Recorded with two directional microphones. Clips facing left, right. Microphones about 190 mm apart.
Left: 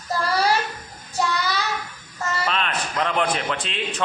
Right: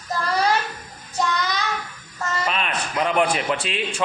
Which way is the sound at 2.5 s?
10° right (ahead or behind).